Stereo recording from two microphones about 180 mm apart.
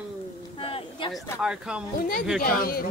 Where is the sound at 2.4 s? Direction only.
55° left (ahead or behind).